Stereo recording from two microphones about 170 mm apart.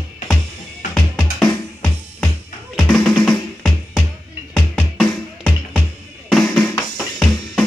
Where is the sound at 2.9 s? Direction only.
5° left (ahead or behind).